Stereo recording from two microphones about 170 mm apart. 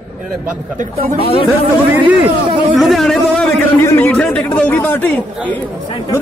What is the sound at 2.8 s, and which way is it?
A man's voice, centre (ahead or behind).